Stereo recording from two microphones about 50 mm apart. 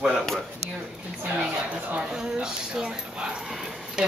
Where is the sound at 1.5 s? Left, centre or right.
Right.